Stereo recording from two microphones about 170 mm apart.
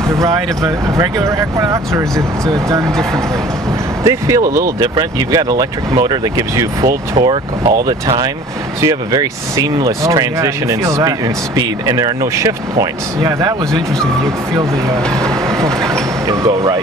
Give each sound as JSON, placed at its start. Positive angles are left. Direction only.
{"t": 0.1, "sound": "a sound", "side_deg": -20}
{"t": 0.9, "sound": "speech", "side_deg": -20}
{"t": 4.0, "sound": "speech", "side_deg": -20}
{"t": 7.2, "sound": "speech", "side_deg": -30}
{"t": 16.3, "sound": "speech", "side_deg": -20}